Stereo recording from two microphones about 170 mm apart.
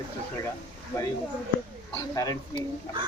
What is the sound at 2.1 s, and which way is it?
Speech, 20° left (ahead or behind).